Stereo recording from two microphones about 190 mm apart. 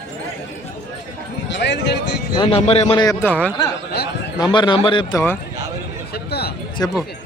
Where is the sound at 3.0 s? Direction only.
15° left (ahead or behind).